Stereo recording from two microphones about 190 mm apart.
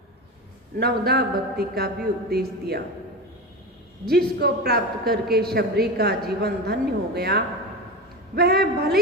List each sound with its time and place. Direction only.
0.8 s a man's voice: 55° right (ahead or behind)
4.0 s a man's voice: 55° right (ahead or behind)